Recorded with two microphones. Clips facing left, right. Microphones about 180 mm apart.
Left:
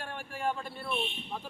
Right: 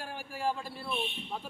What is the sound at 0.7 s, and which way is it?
Speech, 30° right (ahead or behind).